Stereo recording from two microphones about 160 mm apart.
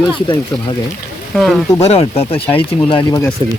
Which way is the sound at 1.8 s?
40° left (ahead or behind).